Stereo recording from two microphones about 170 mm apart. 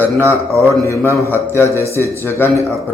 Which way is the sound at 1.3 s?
15° left (ahead or behind).